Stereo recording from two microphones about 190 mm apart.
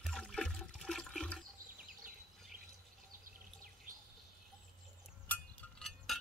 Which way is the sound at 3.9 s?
45° right (ahead or behind).